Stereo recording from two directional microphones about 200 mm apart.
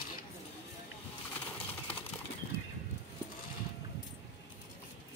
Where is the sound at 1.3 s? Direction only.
10° left (ahead or behind).